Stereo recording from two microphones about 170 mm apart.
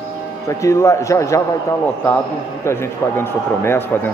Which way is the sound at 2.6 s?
15° left (ahead or behind).